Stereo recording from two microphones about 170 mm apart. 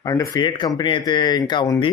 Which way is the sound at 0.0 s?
20° left (ahead or behind).